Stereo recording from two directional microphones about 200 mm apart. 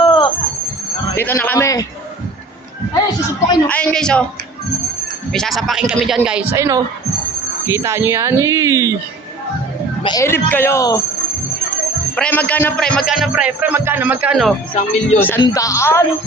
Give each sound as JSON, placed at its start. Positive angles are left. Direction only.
{"t": 0.0, "sound": "a sound", "side_deg": 25}
{"t": 1.1, "sound": "speech", "side_deg": 10}
{"t": 3.7, "sound": "a man's voice", "side_deg": 5}
{"t": 5.3, "sound": "a man's voice", "side_deg": 0}
{"t": 6.5, "sound": "speech", "side_deg": -15}
{"t": 10.0, "sound": "speech", "side_deg": 20}
{"t": 12.1, "sound": "a man's voice", "side_deg": 5}
{"t": 14.8, "sound": "speech", "side_deg": 35}
{"t": 15.4, "sound": "speech", "side_deg": 15}